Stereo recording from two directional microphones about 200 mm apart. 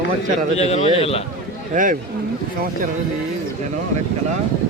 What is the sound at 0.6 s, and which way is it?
Speech, 30° left (ahead or behind).